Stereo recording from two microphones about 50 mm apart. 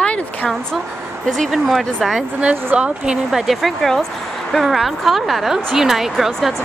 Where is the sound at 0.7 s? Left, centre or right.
Centre.